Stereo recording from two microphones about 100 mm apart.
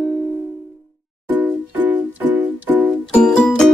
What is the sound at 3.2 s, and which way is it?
Music, 5° left (ahead or behind).